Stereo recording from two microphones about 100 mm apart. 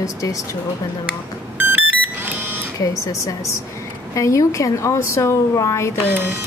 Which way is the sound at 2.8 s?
35° left (ahead or behind).